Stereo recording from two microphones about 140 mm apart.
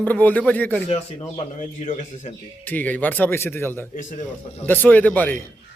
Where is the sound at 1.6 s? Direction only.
60° left (ahead or behind).